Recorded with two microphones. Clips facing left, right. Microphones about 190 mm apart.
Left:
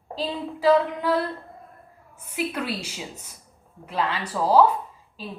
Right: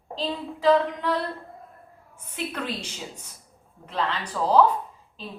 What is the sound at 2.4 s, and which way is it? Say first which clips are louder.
A woman's voice: left 3 dB; 10° left (ahead or behind).